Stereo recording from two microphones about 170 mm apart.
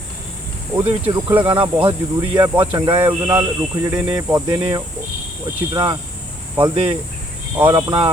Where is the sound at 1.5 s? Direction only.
30° right (ahead or behind).